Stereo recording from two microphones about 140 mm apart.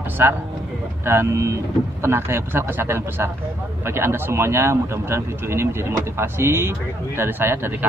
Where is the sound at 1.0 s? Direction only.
20° right (ahead or behind).